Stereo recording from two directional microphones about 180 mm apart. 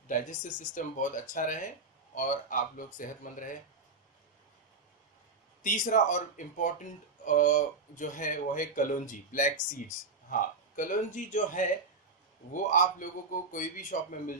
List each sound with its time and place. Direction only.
0.1 s speech: 45° left (ahead or behind)
5.6 s speech: 50° left (ahead or behind)